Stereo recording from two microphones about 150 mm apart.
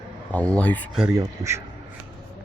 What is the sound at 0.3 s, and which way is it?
Speech, 10° left (ahead or behind).